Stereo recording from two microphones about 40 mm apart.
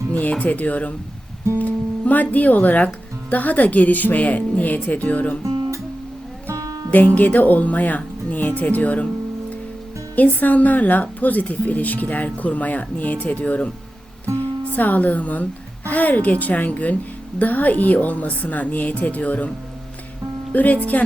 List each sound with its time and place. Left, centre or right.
0.1 s a woman's voice: left
6.9 s a woman's voice: left
10.2 s a woman's voice: left
20.5 s speech: left